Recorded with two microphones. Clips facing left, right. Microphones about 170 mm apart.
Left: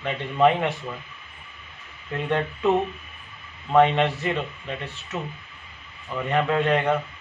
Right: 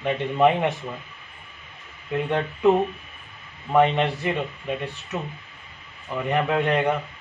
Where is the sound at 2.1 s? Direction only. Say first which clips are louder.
Right 1 dB; 10° right (ahead or behind).